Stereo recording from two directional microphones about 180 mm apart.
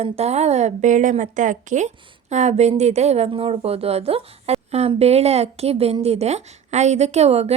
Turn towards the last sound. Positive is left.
turn(degrees=-35)  # may be behind; listen again after turning